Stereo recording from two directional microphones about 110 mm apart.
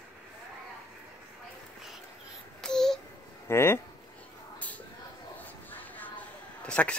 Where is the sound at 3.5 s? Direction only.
20° left (ahead or behind).